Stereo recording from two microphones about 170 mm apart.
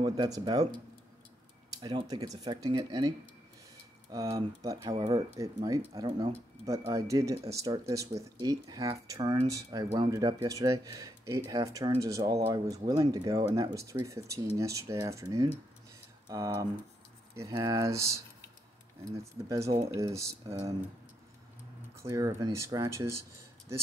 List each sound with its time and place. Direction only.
0.0 s speech: 25° right (ahead or behind)
1.8 s speech: 25° right (ahead or behind)
4.1 s speech: 20° right (ahead or behind)
22.0 s speech: 20° right (ahead or behind)